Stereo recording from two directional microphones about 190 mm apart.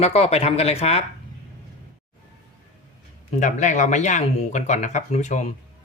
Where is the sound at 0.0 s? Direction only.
35° left (ahead or behind).